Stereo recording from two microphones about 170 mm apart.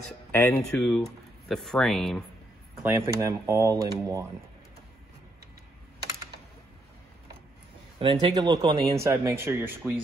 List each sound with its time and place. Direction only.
0.3 s speech: 15° left (ahead or behind)
0.7 s speech: 5° left (ahead or behind)
2.8 s speech: 15° right (ahead or behind)
8.0 s speech: 30° right (ahead or behind); by 9.9 s 15° right (ahead or behind)